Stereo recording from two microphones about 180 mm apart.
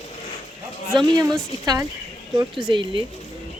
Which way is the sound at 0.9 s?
25° right (ahead or behind).